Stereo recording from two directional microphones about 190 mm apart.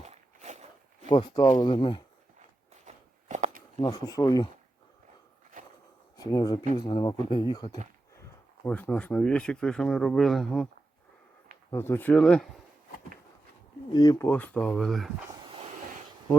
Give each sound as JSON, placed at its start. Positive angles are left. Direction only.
{"t": 0.0, "sound": "walk", "side_deg": -35}
{"t": 1.0, "sound": "speech", "side_deg": 25}
{"t": 2.8, "sound": "walk", "side_deg": -40}
{"t": 3.8, "sound": "speech", "side_deg": 25}
{"t": 5.5, "sound": "walk", "side_deg": -45}
{"t": 6.1, "sound": "speech", "side_deg": 20}
{"t": 8.6, "sound": "speech", "side_deg": 10}
{"t": 11.7, "sound": "speech", "side_deg": 15}
{"t": 13.9, "sound": "speech", "side_deg": 20}